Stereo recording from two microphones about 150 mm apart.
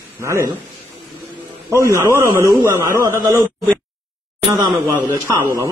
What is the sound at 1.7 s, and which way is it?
A man's voice, 20° right (ahead or behind).